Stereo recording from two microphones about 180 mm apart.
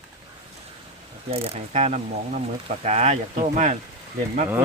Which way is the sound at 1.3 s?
35° right (ahead or behind).